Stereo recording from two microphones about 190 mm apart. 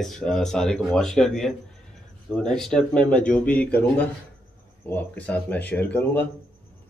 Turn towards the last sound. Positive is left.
turn(degrees=10)  # may be behind; listen again after turning